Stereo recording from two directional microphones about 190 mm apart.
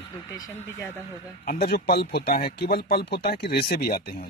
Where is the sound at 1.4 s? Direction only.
50° left (ahead or behind).